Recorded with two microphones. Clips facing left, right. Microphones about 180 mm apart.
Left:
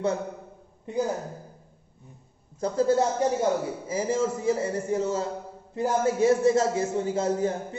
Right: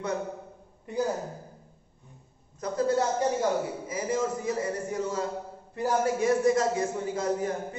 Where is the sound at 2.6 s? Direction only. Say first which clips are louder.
Left 4 dB; 30° left (ahead or behind).